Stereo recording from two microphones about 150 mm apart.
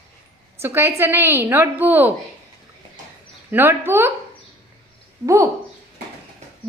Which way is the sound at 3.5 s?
15° right (ahead or behind).